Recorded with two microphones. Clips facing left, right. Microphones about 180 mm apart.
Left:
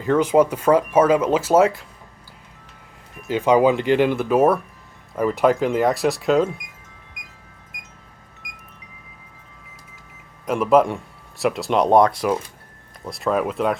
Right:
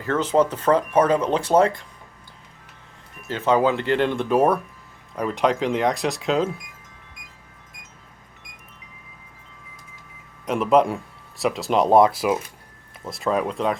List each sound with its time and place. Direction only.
0.0 s speech: 15° left (ahead or behind)
3.2 s speech: 15° left (ahead or behind)
10.4 s speech: centre (ahead or behind)